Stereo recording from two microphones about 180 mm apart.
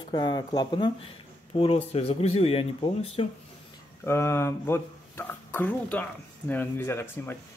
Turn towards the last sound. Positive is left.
turn(degrees=10)  # may be behind; listen again after turning